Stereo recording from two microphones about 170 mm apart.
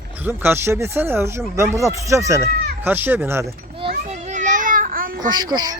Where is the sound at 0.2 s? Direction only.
10° right (ahead or behind).